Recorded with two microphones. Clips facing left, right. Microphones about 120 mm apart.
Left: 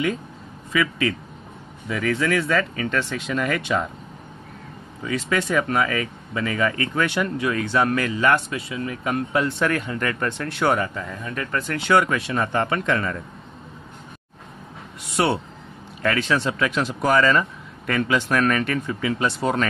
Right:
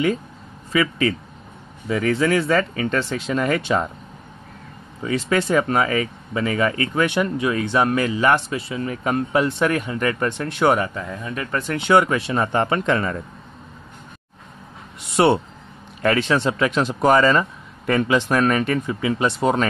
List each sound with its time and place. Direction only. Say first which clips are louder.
2.0 s speech: right 3 dB; 35° right (ahead or behind)
5.0 s speech: right 3 dB; 30° right (ahead or behind)
15.1 s speech: right 5 dB; 25° right (ahead or behind)